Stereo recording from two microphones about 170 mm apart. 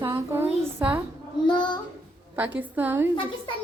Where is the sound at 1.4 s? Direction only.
25° left (ahead or behind).